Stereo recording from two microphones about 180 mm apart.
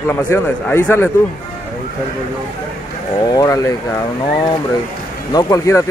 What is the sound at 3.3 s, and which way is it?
Speech, 20° left (ahead or behind).